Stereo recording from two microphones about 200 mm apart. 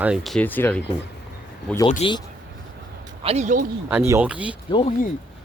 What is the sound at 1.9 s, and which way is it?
Speech, 30° left (ahead or behind).